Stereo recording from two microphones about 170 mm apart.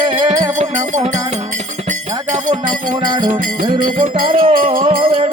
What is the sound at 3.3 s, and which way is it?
Music, 55° right (ahead or behind).